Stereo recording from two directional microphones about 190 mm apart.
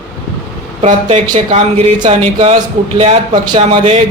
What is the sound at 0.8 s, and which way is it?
A man's voice, 35° right (ahead or behind).